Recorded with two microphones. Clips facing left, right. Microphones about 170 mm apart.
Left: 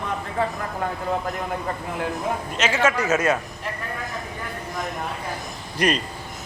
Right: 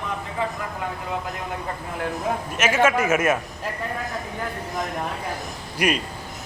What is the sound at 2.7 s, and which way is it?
Speech, 20° right (ahead or behind).